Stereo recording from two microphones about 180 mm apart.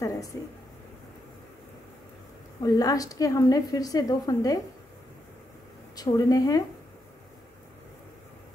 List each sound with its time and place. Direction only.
0.0 s a sound: 20° left (ahead or behind)
2.6 s a woman's voice: 20° left (ahead or behind)
5.9 s a woman's voice: 20° left (ahead or behind)